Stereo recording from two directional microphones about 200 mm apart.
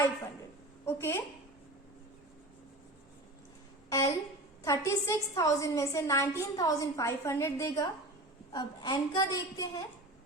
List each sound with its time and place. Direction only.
0.9 s a woman's voice: 10° left (ahead or behind)
3.8 s a woman's voice: 15° left (ahead or behind)